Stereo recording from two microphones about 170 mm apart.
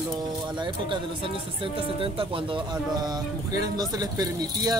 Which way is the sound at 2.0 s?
30° right (ahead or behind).